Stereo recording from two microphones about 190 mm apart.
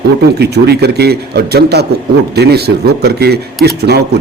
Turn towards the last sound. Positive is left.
turn(degrees=-60)  # may be behind; listen again after turning